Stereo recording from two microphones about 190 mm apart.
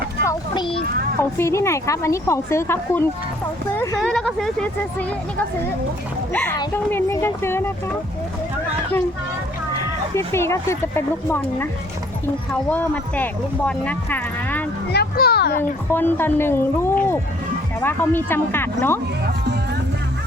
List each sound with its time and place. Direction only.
0.3 s vehicle: 25° left (ahead or behind)
1.2 s a woman's voice: 15° left (ahead or behind)
6.3 s a woman's voice: 10° left (ahead or behind)
9.8 s speech: 15° left (ahead or behind)
12.7 s a woman's voice: 10° left (ahead or behind)
14.9 s children playing: 55° left (ahead or behind)
15.9 s a woman's voice: 10° left (ahead or behind)